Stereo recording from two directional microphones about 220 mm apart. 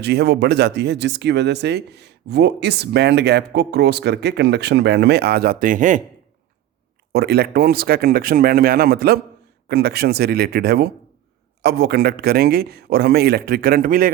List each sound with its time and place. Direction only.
0.0 s speech: 50° right (ahead or behind)
7.1 s speech: 45° right (ahead or behind)